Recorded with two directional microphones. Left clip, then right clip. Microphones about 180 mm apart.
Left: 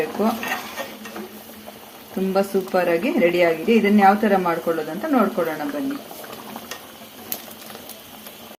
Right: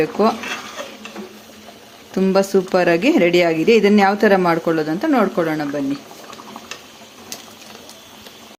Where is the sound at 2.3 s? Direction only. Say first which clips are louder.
Right 4 dB; 60° right (ahead or behind).